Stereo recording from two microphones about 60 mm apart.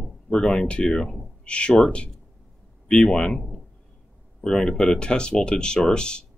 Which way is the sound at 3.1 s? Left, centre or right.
Centre.